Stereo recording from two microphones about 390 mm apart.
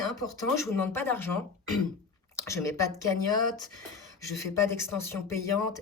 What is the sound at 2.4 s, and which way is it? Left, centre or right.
Speech, centre.